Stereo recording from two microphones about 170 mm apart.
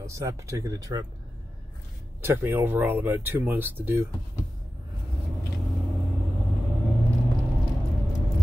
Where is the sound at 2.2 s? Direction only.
10° right (ahead or behind).